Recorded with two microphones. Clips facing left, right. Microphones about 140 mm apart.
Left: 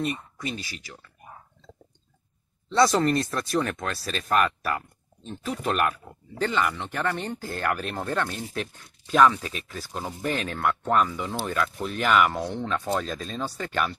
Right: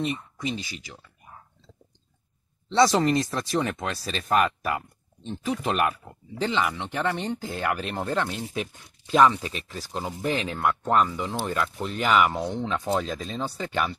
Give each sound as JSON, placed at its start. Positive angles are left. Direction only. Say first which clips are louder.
{"t": 0.0, "sound": "speech", "louder": "right 1 dB", "side_deg": -20}
{"t": 2.7, "sound": "speech", "louder": "right 1 dB", "side_deg": -20}